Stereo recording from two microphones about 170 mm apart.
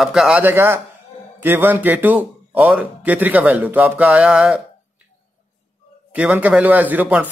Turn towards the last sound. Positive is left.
turn(degrees=-10)  # may be behind; listen again after turning